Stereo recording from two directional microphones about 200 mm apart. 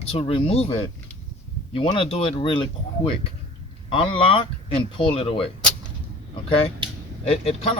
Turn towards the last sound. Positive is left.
turn(degrees=30)  # may be behind; listen again after turning